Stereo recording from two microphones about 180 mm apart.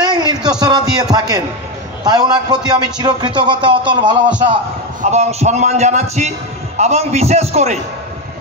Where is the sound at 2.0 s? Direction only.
25° right (ahead or behind).